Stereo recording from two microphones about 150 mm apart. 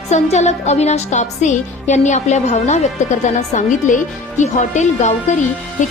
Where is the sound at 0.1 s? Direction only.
50° left (ahead or behind).